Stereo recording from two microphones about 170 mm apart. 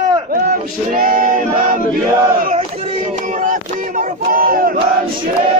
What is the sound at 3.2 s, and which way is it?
Male singing, 50° right (ahead or behind).